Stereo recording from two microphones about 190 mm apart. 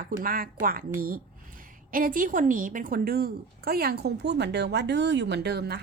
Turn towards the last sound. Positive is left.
turn(degrees=-60)  # may be behind; listen again after turning